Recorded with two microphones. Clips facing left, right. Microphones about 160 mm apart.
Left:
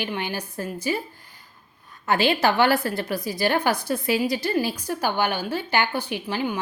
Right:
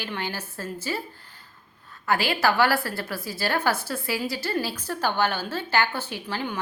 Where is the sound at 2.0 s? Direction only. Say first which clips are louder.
Left 3 dB; 20° left (ahead or behind).